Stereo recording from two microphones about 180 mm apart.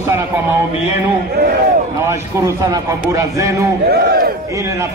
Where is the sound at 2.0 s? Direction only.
15° right (ahead or behind).